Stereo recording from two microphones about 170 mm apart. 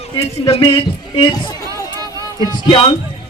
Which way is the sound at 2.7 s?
30° left (ahead or behind).